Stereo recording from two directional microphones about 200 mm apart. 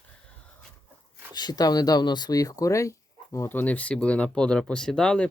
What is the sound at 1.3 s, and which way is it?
Speech, 20° left (ahead or behind).